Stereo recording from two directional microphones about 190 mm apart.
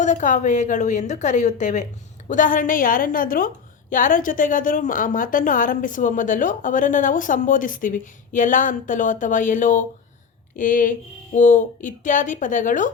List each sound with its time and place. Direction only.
0.0 s a woman's voice: 40° left (ahead or behind)